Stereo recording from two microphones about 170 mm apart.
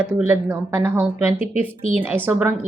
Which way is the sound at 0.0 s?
10° right (ahead or behind).